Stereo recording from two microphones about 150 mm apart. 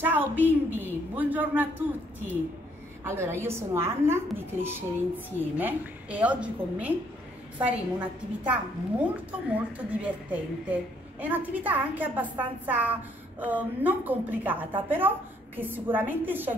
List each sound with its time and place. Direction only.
0.0 s a woman's voice: 15° right (ahead or behind)
3.0 s a woman's voice: 15° right (ahead or behind)